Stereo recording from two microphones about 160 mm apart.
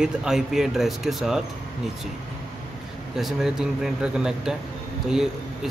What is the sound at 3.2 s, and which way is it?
Speech, centre (ahead or behind).